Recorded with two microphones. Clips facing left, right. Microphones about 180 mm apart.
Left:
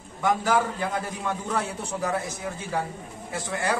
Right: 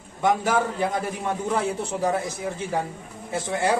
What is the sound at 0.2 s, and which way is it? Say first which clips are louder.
A man's voice: right 1 dB; 20° right (ahead or behind).